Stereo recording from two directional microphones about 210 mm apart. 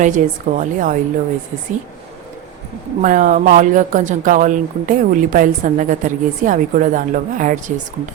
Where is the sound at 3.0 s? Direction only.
40° right (ahead or behind).